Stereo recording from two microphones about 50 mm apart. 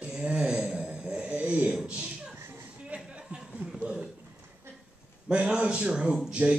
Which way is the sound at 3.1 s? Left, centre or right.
Centre.